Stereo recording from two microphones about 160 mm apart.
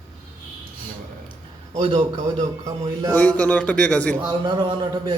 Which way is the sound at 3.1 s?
10° left (ahead or behind).